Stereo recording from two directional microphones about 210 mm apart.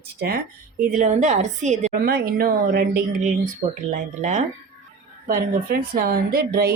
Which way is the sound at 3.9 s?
35° right (ahead or behind).